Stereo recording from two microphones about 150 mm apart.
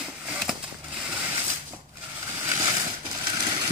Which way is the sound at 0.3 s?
5° right (ahead or behind).